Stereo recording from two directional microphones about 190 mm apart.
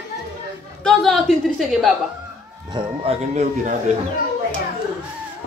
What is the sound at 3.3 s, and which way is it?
Speech, 40° right (ahead or behind).